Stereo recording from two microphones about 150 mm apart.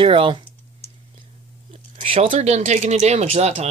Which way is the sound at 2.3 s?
50° right (ahead or behind).